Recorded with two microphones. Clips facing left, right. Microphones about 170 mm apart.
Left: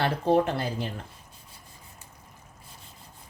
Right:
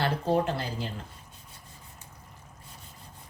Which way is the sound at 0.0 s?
60° left (ahead or behind).